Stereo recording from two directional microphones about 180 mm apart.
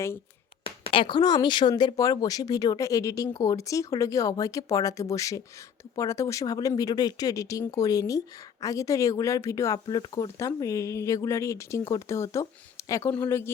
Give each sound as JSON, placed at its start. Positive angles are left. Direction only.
{"t": 0.6, "sound": "speech", "side_deg": 30}